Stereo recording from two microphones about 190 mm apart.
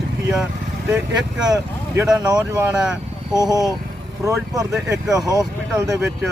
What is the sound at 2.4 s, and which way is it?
Speech, 5° right (ahead or behind).